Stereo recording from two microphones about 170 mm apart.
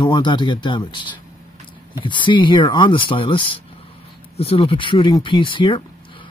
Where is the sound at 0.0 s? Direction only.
25° left (ahead or behind).